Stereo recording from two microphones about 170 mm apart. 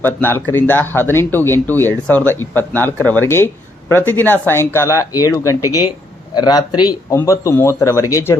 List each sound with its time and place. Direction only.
0.0 s speech: 10° left (ahead or behind)